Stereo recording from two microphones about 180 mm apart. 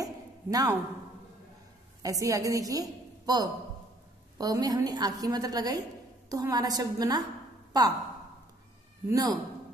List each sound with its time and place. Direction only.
0.0 s a sound: 20° right (ahead or behind)
2.0 s a woman's voice: 20° right (ahead or behind)
9.1 s a woman's voice: 20° right (ahead or behind)